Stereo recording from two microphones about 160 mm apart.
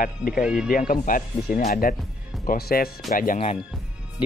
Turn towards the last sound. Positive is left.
turn(degrees=60)  # may be behind; listen again after turning